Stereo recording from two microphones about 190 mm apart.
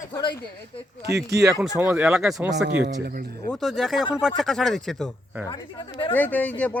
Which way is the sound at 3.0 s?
55° right (ahead or behind).